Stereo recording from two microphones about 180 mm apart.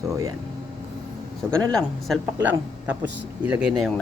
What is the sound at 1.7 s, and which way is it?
Speech, centre (ahead or behind).